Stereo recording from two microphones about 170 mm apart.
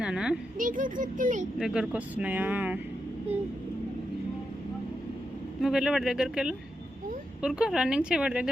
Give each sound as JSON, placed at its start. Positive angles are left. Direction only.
{"t": 0.0, "sound": "a woman's voice", "side_deg": -5}
{"t": 0.6, "sound": "a child's voice", "side_deg": -50}
{"t": 1.5, "sound": "speech", "side_deg": -5}
{"t": 5.6, "sound": "speech", "side_deg": -5}